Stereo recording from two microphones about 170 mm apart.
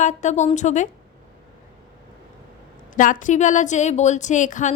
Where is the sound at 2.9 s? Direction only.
50° left (ahead or behind).